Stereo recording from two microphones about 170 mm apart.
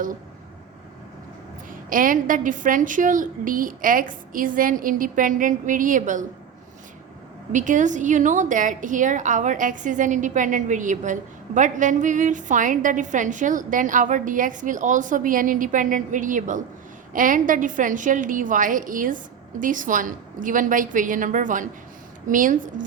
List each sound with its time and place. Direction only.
1.9 s a woman's voice: 55° right (ahead or behind)
7.5 s a woman's voice: 50° right (ahead or behind)